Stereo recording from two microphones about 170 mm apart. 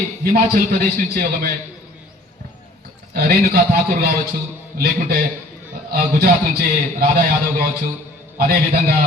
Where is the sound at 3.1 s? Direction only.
65° right (ahead or behind).